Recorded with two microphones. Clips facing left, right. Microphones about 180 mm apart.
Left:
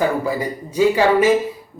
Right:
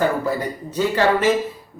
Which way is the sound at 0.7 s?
10° left (ahead or behind).